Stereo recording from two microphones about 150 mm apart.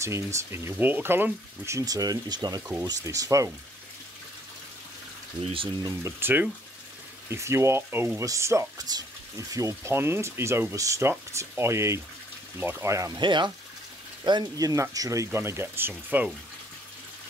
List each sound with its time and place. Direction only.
0.0 s speech: 20° right (ahead or behind)
5.4 s speech: 35° right (ahead or behind)
5.9 s speech: 15° right (ahead or behind)
13.2 s speech: 30° right (ahead or behind); by 16.3 s 10° right (ahead or behind)